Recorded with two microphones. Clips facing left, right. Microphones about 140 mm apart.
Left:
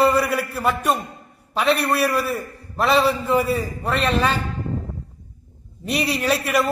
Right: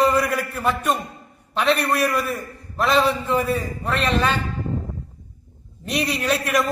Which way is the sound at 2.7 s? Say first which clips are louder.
Left 1 dB; centre (ahead or behind).